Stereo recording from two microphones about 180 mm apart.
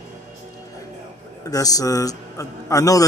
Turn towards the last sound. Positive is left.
turn(degrees=20)  # may be behind; listen again after turning